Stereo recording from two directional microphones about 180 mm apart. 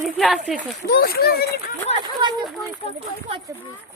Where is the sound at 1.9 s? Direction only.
35° left (ahead or behind).